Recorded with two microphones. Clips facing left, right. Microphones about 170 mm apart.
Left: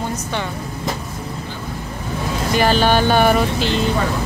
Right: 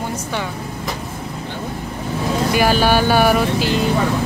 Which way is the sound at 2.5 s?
10° right (ahead or behind).